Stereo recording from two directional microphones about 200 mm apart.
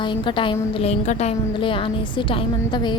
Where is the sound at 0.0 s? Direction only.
25° left (ahead or behind).